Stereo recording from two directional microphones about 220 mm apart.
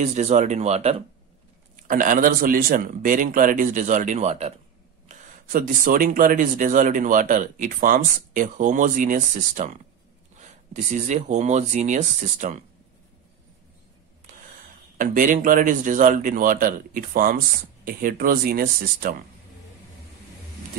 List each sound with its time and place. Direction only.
0.0 s speech: 30° right (ahead or behind)
14.3 s mechanisms: 35° right (ahead or behind)
15.0 s speech: 35° right (ahead or behind)